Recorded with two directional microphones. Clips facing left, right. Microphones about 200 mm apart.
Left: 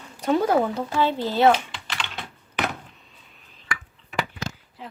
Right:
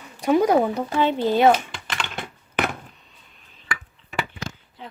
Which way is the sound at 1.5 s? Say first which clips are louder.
Right 1 dB; 50° right (ahead or behind).